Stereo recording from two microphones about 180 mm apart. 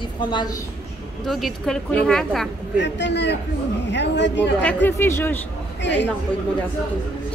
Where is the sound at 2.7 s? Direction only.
75° left (ahead or behind).